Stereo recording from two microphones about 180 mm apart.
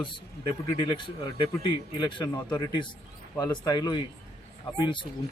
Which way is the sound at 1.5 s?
25° left (ahead or behind).